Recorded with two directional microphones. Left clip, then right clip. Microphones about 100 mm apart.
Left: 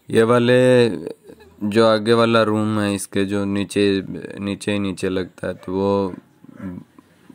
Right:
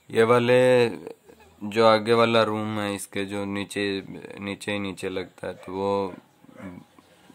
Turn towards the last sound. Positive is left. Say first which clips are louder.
# left 6 dB
turn(degrees=25)  # may be behind; listen again after turning